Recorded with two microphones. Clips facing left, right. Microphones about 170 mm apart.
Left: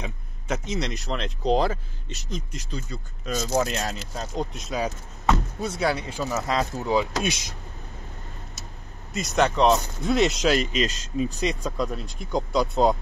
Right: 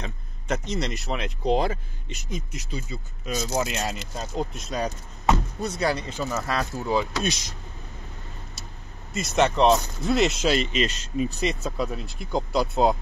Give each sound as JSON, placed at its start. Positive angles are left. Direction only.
{"t": 0.0, "sound": "speech", "side_deg": 0}
{"t": 6.4, "sound": "speech", "side_deg": 20}
{"t": 9.1, "sound": "speech", "side_deg": 0}
{"t": 10.5, "sound": "speech", "side_deg": 40}
{"t": 11.1, "sound": "speech", "side_deg": -5}